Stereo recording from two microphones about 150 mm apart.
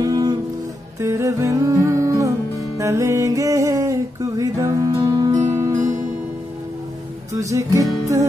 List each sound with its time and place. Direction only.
0.0 s music: 25° right (ahead or behind)
7.3 s music: 20° right (ahead or behind)